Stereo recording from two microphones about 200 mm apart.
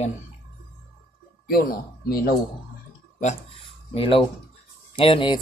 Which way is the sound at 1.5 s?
50° left (ahead or behind).